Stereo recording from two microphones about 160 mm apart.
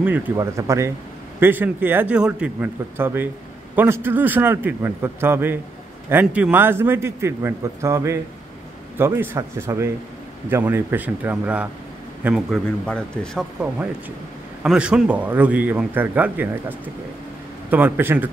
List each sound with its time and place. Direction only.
0.4 s a man's voice: 20° right (ahead or behind); by 13.5 s 5° left (ahead or behind)
14.6 s a man's voice: 5° right (ahead or behind)